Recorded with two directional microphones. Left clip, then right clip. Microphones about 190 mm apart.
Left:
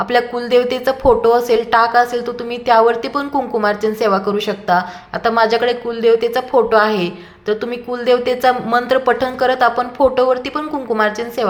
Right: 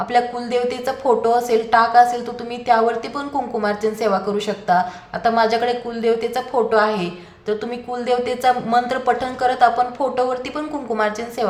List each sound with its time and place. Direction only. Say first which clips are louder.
0.0 s a woman's voice: left 3 dB; 25° left (ahead or behind)